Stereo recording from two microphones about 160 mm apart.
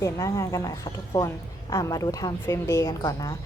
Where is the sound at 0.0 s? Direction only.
20° left (ahead or behind).